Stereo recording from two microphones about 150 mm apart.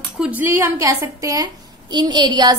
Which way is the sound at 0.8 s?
25° right (ahead or behind).